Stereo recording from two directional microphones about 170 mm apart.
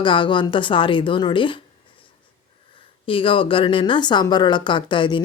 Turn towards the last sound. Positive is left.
turn(degrees=30)  # may be behind; listen again after turning